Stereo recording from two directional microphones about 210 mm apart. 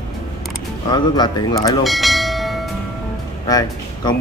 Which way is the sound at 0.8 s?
20° left (ahead or behind).